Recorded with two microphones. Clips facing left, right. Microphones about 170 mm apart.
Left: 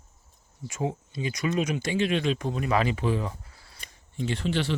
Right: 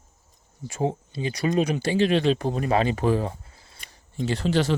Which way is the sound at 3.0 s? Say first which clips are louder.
Right 5 dB; 40° right (ahead or behind).